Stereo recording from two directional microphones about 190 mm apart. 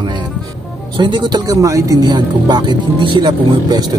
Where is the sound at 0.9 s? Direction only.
25° right (ahead or behind).